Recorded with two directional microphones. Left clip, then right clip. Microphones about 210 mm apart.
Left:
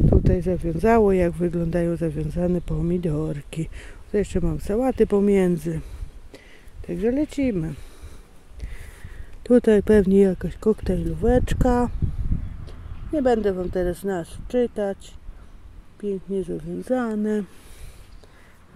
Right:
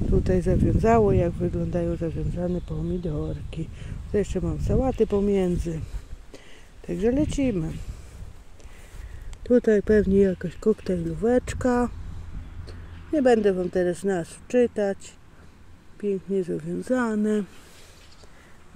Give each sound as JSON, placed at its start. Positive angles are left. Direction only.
{"t": 0.2, "sound": "speech", "side_deg": 5}
{"t": 4.1, "sound": "speech", "side_deg": 15}
{"t": 6.9, "sound": "speech", "side_deg": 5}
{"t": 9.4, "sound": "speech", "side_deg": 20}
{"t": 12.6, "sound": "speech", "side_deg": -5}
{"t": 16.0, "sound": "speech", "side_deg": 0}